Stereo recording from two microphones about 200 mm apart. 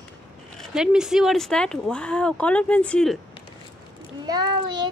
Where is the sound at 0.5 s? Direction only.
5° right (ahead or behind).